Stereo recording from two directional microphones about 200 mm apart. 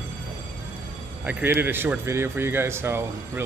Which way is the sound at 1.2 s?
10° right (ahead or behind).